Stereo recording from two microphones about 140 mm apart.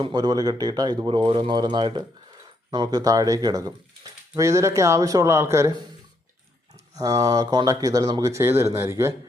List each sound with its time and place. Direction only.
0.0 s speech: 30° right (ahead or behind)
6.9 s speech: 25° right (ahead or behind)